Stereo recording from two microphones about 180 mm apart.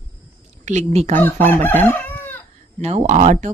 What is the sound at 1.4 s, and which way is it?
Chicken, 10° left (ahead or behind).